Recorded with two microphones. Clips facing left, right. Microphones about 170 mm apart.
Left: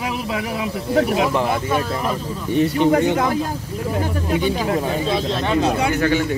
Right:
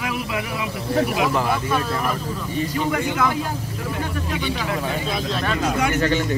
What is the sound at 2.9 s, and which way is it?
Speech, 35° left (ahead or behind).